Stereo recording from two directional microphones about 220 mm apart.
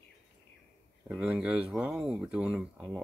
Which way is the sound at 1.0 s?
5° right (ahead or behind).